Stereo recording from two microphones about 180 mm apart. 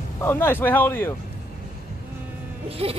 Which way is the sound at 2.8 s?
35° right (ahead or behind).